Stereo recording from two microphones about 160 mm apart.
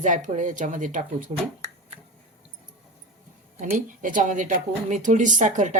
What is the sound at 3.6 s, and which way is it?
A woman's voice, 55° right (ahead or behind).